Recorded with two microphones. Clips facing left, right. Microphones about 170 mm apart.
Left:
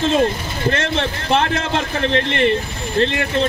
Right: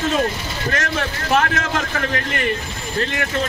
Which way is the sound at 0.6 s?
25° left (ahead or behind).